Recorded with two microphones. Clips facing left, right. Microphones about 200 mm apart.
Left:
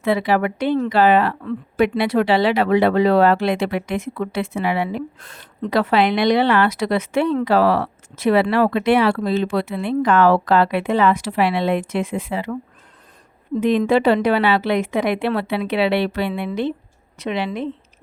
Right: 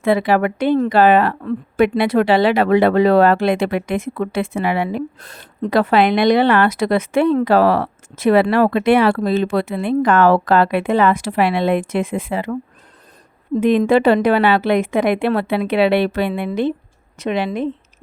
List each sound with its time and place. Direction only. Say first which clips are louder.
0.0 s a woman's voice: right 3 dB; 50° right (ahead or behind)
13.6 s a woman's voice: right 3 dB; 50° right (ahead or behind)